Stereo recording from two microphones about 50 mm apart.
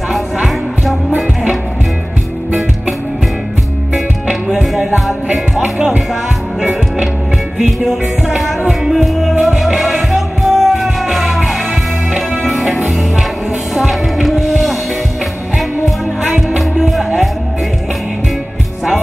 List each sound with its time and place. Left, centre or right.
3.9 s music: centre
5.3 s music: right
8.4 s music: centre
15.8 s music: centre